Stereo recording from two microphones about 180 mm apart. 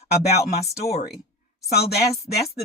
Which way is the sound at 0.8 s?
60° left (ahead or behind).